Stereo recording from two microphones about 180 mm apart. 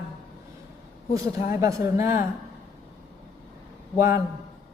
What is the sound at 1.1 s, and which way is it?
Speech, 15° right (ahead or behind).